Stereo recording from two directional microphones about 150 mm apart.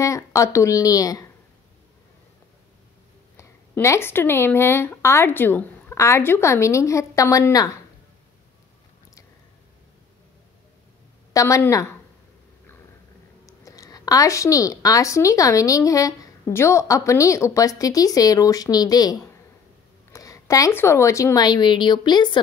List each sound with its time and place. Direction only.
0.0 s speech: 20° left (ahead or behind)
3.3 s speech: 20° left (ahead or behind)
11.3 s a woman's voice: 20° left (ahead or behind)
13.5 s a woman's voice: 20° left (ahead or behind)